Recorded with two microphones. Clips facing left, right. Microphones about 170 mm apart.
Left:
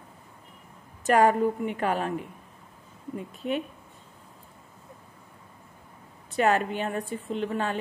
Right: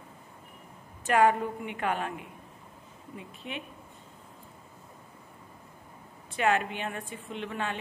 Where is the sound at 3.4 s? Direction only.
40° left (ahead or behind).